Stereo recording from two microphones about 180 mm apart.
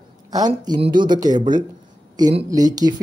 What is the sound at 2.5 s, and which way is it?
Speech, 20° right (ahead or behind).